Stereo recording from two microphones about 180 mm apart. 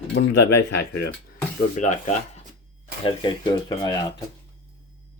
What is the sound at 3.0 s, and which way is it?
Speech, 25° left (ahead or behind).